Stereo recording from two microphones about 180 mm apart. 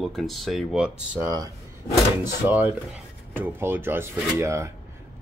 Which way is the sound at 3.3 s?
10° right (ahead or behind).